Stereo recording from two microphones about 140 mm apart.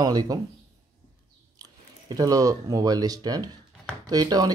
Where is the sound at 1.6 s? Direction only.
25° right (ahead or behind).